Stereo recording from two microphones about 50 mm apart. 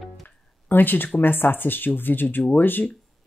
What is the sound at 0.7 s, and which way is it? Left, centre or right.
Speech, left.